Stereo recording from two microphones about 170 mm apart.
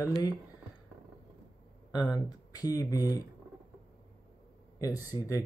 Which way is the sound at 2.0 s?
20° left (ahead or behind).